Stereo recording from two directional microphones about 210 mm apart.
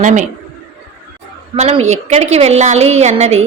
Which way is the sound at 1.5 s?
30° right (ahead or behind).